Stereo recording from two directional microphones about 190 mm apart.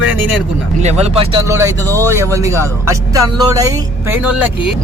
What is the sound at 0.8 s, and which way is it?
Speech, 35° right (ahead or behind).